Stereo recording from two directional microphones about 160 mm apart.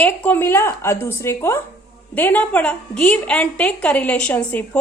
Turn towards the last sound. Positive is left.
turn(degrees=10)  # may be behind; listen again after turning